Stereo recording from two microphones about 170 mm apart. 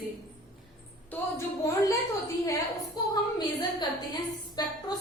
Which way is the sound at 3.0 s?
25° left (ahead or behind).